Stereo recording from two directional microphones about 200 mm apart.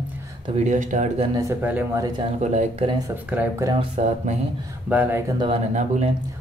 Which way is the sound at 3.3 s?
5° right (ahead or behind).